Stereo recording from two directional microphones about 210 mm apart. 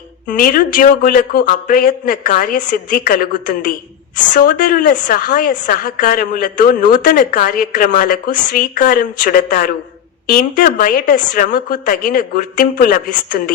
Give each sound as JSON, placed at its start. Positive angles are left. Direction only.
{"t": 0.3, "sound": "a woman's voice", "side_deg": 45}